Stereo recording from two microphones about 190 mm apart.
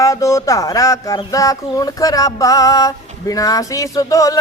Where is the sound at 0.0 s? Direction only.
15° left (ahead or behind).